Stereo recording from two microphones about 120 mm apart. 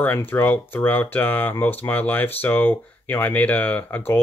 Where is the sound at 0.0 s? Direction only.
15° left (ahead or behind).